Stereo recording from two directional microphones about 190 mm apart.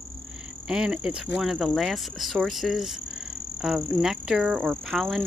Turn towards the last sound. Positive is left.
turn(degrees=0)  # may be behind; listen again after turning